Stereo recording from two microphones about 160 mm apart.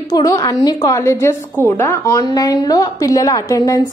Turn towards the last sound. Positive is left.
turn(degrees=20)  # may be behind; listen again after turning